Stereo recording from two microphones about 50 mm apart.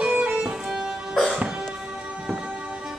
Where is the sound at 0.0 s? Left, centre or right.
Right.